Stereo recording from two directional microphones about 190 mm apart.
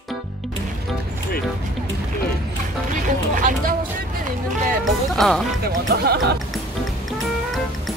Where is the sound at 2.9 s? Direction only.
45° right (ahead or behind).